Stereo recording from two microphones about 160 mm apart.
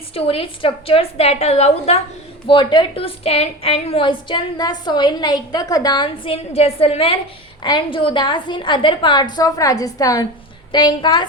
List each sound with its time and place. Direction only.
0.1 s a woman's voice: 35° left (ahead or behind)